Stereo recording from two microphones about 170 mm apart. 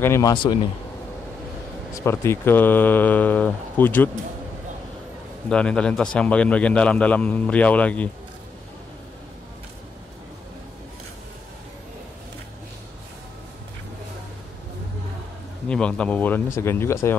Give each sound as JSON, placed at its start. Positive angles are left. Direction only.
{"t": 0.0, "sound": "speech", "side_deg": 15}
{"t": 2.0, "sound": "a man's voice", "side_deg": 15}
{"t": 5.5, "sound": "a man's voice", "side_deg": 5}
{"t": 15.7, "sound": "a man's voice", "side_deg": 5}